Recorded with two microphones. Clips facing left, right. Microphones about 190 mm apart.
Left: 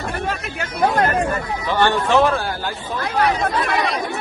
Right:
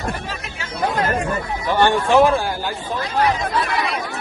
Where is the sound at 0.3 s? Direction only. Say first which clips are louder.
Left 5 dB; 55° left (ahead or behind).